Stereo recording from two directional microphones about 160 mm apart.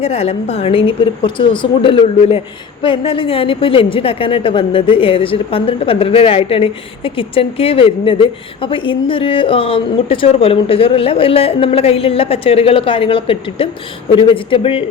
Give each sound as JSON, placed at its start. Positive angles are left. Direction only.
{"t": 0.0, "sound": "a woman's voice", "side_deg": 40}